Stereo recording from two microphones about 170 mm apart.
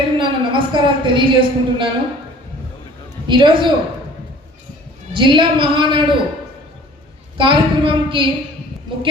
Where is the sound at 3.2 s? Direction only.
30° right (ahead or behind).